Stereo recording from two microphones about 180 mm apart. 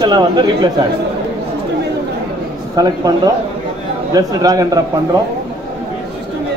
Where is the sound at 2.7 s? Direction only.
20° right (ahead or behind).